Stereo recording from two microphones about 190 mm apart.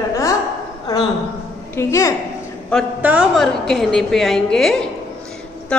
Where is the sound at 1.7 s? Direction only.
15° left (ahead or behind).